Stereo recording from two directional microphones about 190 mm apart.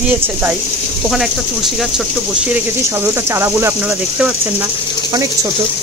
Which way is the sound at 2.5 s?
10° right (ahead or behind).